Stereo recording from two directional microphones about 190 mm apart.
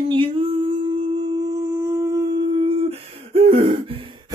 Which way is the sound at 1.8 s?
15° right (ahead or behind).